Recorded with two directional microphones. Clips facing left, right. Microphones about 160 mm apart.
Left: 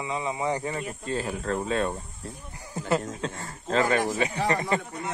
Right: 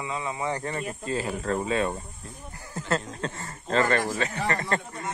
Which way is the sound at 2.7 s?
10° left (ahead or behind).